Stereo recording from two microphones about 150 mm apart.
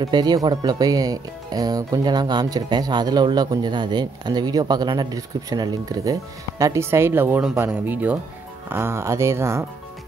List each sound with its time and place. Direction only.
0.0 s speech: 30° right (ahead or behind)